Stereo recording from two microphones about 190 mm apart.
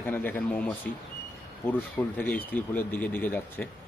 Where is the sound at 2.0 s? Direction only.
5° left (ahead or behind).